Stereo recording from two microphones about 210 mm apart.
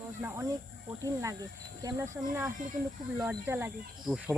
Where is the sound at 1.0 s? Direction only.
15° right (ahead or behind).